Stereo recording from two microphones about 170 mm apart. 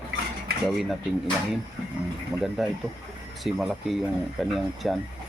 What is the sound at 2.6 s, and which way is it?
Speech, centre (ahead or behind).